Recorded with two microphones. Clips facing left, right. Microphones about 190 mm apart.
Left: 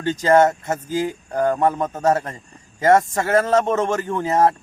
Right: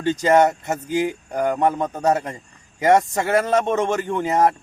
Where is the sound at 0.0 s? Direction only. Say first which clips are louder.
Left 1 dB; 15° right (ahead or behind).